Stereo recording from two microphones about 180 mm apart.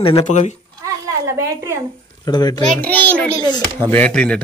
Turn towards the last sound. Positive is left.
turn(degrees=5)  # may be behind; listen again after turning